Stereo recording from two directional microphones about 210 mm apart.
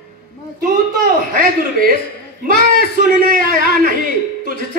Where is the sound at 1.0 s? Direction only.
45° right (ahead or behind).